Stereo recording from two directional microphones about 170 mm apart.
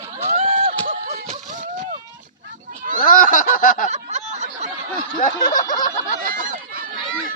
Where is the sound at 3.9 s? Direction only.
45° right (ahead or behind).